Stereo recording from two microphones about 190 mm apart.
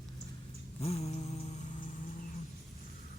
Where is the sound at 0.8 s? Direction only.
30° left (ahead or behind).